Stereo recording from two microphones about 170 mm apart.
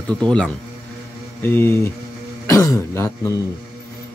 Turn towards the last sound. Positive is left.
turn(degrees=15)  # may be behind; listen again after turning